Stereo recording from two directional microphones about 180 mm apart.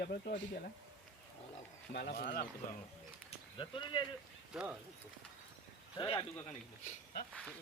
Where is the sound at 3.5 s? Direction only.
25° left (ahead or behind).